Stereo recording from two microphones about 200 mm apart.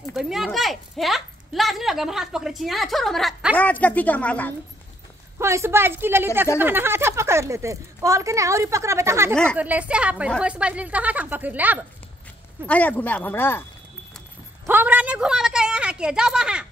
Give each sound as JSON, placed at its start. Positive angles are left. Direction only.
{"t": 0.1, "sound": "speech", "side_deg": 0}
{"t": 5.4, "sound": "speech", "side_deg": -15}
{"t": 9.3, "sound": "speech", "side_deg": 5}
{"t": 9.6, "sound": "speech", "side_deg": -5}
{"t": 12.6, "sound": "speech", "side_deg": 5}
{"t": 14.7, "sound": "a sound", "side_deg": -10}